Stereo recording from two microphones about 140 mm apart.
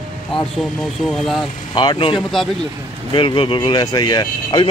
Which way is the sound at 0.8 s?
Centre (ahead or behind).